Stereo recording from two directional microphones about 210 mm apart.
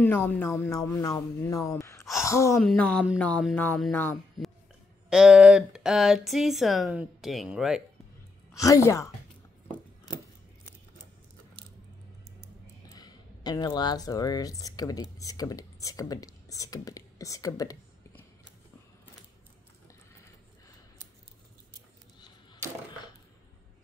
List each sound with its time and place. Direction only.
0.0 s speech: 10° left (ahead or behind)
5.1 s speech: 5° right (ahead or behind)
8.5 s speech: 15° left (ahead or behind)
12.9 s speech: 20° left (ahead or behind)